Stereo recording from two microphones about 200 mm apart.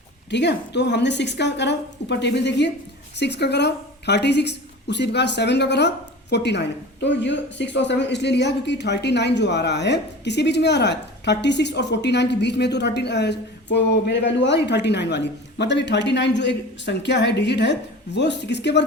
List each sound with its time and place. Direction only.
0.3 s a woman's voice: 60° left (ahead or behind)